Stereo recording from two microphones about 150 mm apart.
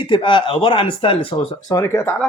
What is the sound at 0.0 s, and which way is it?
Speech, 35° left (ahead or behind).